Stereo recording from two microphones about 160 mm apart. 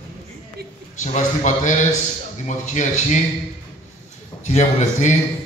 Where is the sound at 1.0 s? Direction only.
50° left (ahead or behind).